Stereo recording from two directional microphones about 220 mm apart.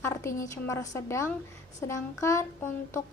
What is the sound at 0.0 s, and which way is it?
Speech, 10° left (ahead or behind).